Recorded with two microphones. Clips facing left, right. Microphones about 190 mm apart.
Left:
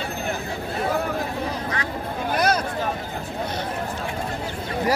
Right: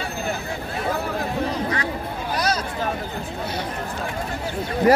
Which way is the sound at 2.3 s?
55° left (ahead or behind).